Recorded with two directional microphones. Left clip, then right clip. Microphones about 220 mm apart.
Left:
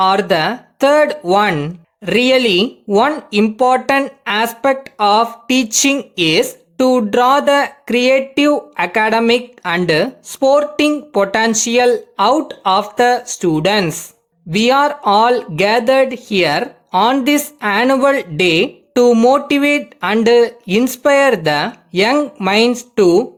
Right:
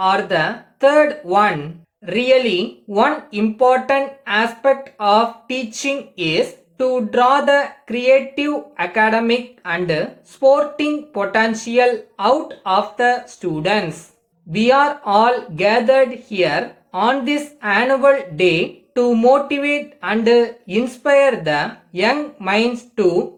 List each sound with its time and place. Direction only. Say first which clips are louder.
0.0 s speech: left 3 dB; 50° left (ahead or behind)